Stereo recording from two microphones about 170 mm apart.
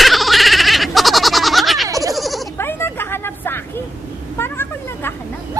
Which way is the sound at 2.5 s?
15° left (ahead or behind).